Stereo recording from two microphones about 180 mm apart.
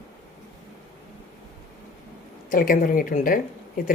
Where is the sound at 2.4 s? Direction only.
50° left (ahead or behind).